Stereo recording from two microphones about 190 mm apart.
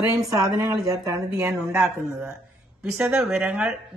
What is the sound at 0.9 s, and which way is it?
Speech, 15° right (ahead or behind).